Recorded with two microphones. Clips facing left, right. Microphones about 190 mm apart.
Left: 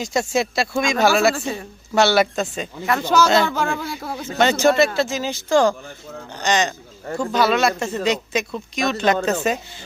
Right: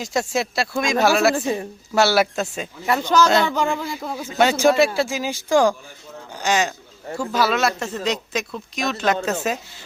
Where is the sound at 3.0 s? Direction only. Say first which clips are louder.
Left 1 dB; 5° left (ahead or behind).